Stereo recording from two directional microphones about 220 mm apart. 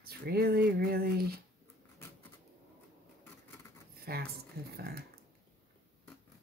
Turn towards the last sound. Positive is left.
turn(degrees=-45)  # may be behind; listen again after turning